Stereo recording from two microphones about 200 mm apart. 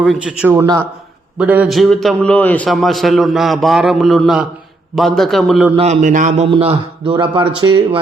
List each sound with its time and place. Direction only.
0.0 s a man's voice: 5° right (ahead or behind)
5.7 s a man's voice: 35° right (ahead or behind)